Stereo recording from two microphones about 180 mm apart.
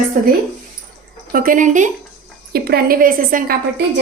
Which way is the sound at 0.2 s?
45° right (ahead or behind).